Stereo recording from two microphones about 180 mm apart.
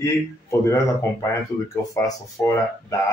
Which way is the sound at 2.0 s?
15° left (ahead or behind).